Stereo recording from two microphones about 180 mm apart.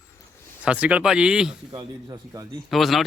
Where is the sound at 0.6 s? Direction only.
5° right (ahead or behind).